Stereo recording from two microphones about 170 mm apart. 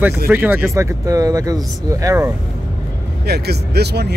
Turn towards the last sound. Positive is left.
turn(degrees=-75)  # may be behind; listen again after turning